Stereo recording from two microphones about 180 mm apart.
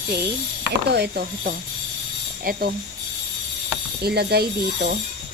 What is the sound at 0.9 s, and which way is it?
Speech, 65° right (ahead or behind).